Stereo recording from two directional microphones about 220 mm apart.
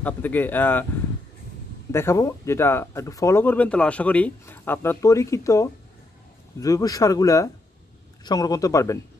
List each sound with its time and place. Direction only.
0.0 s speech: 10° left (ahead or behind)
1.9 s speech: 10° left (ahead or behind)